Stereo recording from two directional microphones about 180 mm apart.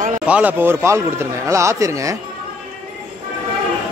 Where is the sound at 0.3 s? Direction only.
10° right (ahead or behind).